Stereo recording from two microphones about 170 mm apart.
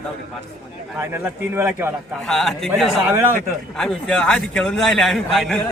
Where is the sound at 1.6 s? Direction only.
10° right (ahead or behind).